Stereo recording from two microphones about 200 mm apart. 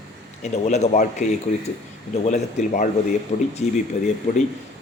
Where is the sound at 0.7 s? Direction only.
35° left (ahead or behind).